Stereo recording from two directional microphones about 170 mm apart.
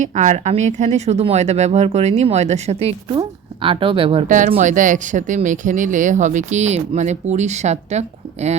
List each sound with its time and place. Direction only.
0.0 s speech: 45° right (ahead or behind)
4.3 s speech: 50° right (ahead or behind)